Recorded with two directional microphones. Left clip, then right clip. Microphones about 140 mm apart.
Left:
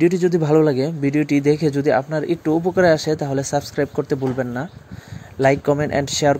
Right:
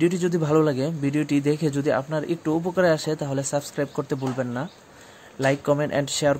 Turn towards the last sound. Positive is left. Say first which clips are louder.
# left 4 dB
turn(degrees=25)  # may be behind; listen again after turning